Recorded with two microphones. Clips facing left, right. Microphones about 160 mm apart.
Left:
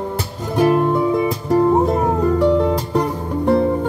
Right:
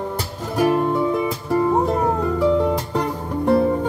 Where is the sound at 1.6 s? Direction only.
10° left (ahead or behind).